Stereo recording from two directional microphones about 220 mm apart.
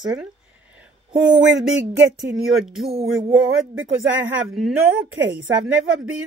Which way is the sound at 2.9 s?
25° right (ahead or behind).